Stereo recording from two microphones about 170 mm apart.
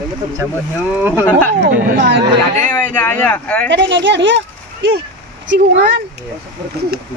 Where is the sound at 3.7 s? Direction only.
90° right.